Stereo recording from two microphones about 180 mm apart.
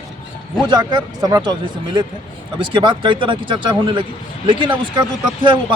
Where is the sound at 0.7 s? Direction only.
20° right (ahead or behind).